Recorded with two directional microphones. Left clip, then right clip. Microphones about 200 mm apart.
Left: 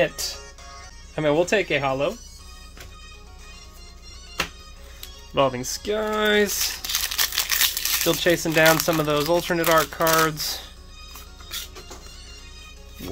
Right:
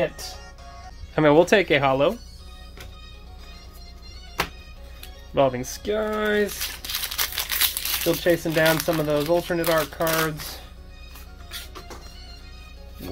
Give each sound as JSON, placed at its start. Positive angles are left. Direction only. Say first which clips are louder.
{"t": 0.0, "sound": "music", "louder": "left 3 dB", "side_deg": 40}
{"t": 1.1, "sound": "speech", "louder": "right 4 dB", "side_deg": -15}
{"t": 5.3, "sound": "speech", "louder": "even", "side_deg": 15}
{"t": 6.8, "sound": "crumpling", "louder": "even", "side_deg": 10}
{"t": 8.2, "sound": "speech", "louder": "right 1 dB", "side_deg": 25}
{"t": 8.5, "sound": "speech", "louder": "left 6 dB", "side_deg": 15}
{"t": 8.8, "sound": "speech", "louder": "left 1 dB", "side_deg": 30}